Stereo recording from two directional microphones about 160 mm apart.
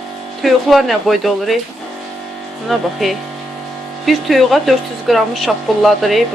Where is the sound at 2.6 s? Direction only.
Centre (ahead or behind).